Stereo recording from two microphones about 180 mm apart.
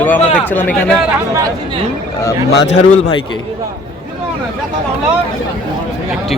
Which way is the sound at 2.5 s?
85° left.